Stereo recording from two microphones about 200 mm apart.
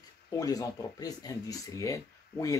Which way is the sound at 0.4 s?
20° left (ahead or behind).